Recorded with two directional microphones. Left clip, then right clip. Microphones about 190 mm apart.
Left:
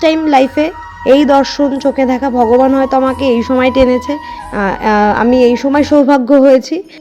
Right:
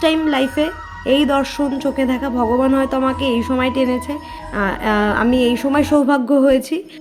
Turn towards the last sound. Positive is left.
turn(degrees=25)  # may be behind; listen again after turning